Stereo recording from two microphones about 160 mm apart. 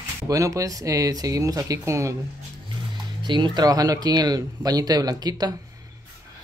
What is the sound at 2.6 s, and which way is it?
Speech, 30° right (ahead or behind).